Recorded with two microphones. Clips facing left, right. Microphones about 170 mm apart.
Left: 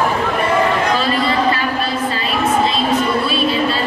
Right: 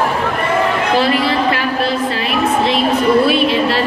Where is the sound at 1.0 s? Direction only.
70° right (ahead or behind).